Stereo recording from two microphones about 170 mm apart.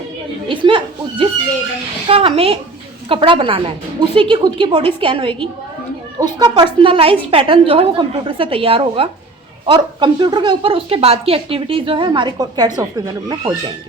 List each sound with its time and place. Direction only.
0.4 s a woman's voice: 30° right (ahead or behind)
2.0 s a woman's voice: 35° right (ahead or behind)